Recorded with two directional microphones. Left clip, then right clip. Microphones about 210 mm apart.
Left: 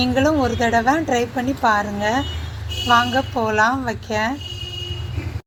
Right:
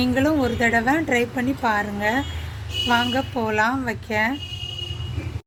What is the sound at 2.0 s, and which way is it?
Speech, 25° right (ahead or behind).